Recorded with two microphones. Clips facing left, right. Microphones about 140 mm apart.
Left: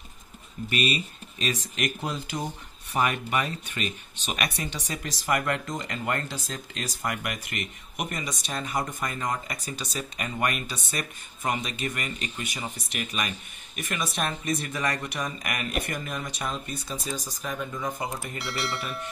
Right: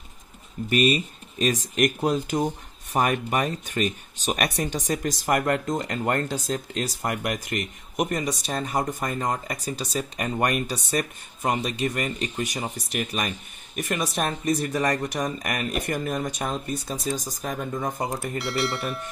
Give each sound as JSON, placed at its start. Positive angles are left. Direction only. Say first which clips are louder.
{"t": 0.7, "sound": "speech", "louder": "right 6 dB", "side_deg": -45}
{"t": 18.4, "sound": "speech", "louder": "right 4 dB", "side_deg": 0}